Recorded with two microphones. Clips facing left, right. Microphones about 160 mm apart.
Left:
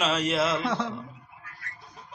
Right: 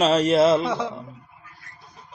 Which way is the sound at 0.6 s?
Centre (ahead or behind).